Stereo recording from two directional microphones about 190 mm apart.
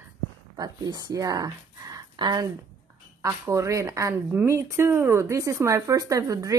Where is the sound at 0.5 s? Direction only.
20° right (ahead or behind).